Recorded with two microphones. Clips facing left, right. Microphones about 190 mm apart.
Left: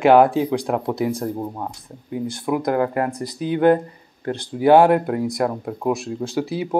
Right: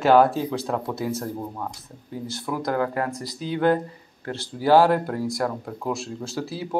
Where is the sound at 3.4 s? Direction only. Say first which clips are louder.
Left 5 dB; 55° left (ahead or behind).